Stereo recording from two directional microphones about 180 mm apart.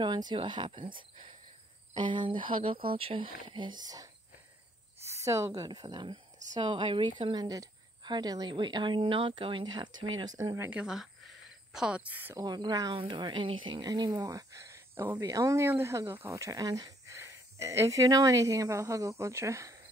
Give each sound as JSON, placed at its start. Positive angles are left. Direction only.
{"t": 0.0, "sound": "a woman's voice", "side_deg": -25}
{"t": 2.0, "sound": "a woman's voice", "side_deg": -25}
{"t": 5.1, "sound": "a woman's voice", "side_deg": -15}
{"t": 9.9, "sound": "speech", "side_deg": -90}
{"t": 10.2, "sound": "a woman's voice", "side_deg": -20}
{"t": 10.7, "sound": "speech", "side_deg": -5}
{"t": 12.4, "sound": "a woman's voice", "side_deg": -25}